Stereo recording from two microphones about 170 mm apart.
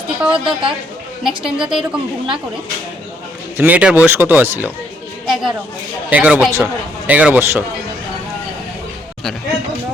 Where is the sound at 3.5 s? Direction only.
10° right (ahead or behind).